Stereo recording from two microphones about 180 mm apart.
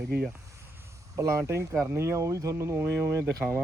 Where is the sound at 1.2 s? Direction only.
15° right (ahead or behind).